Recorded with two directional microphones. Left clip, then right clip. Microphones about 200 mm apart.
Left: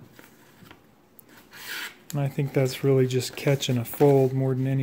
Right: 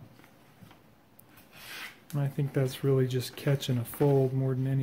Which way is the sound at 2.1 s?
25° left (ahead or behind).